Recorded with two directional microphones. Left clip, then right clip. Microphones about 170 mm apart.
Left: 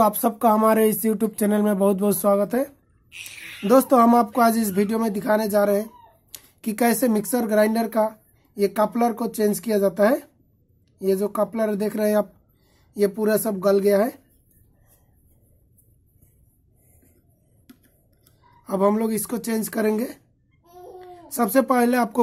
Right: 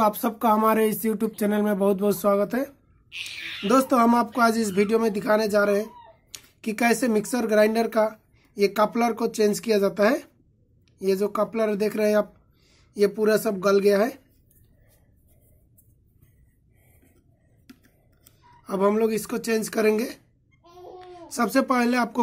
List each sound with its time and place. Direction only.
0.0 s speech: 40° left (ahead or behind)
3.2 s speech: 60° left (ahead or behind)
3.6 s speech: 40° left (ahead or behind)
17.7 s a sound: 5° left (ahead or behind)
18.6 s a child's voice: 35° left (ahead or behind)